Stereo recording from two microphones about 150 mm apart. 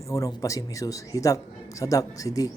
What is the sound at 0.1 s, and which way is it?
A man's voice, 20° left (ahead or behind).